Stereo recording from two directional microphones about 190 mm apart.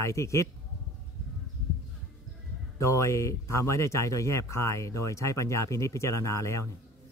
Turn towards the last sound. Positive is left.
turn(degrees=15)  # may be behind; listen again after turning